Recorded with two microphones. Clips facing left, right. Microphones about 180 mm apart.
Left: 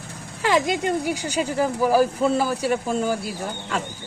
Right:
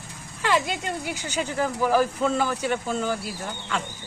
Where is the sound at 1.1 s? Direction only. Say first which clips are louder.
Left 5 dB; 10° left (ahead or behind).